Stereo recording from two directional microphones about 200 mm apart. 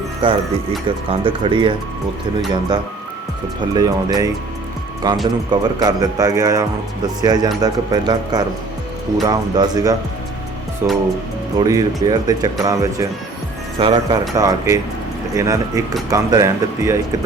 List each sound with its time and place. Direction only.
0.2 s speech: 25° right (ahead or behind)